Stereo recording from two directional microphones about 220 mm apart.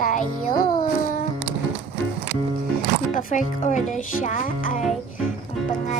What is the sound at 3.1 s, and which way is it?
A child's voice, 35° left (ahead or behind).